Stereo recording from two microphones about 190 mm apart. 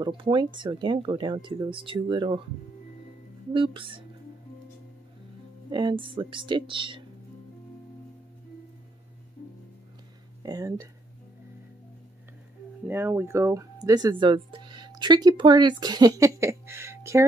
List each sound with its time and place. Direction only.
0.0 s speech: 25° right (ahead or behind)
3.5 s speech: 25° right (ahead or behind)
5.7 s speech: 25° right (ahead or behind)
10.4 s speech: 20° right (ahead or behind)
12.8 s speech: 10° right (ahead or behind)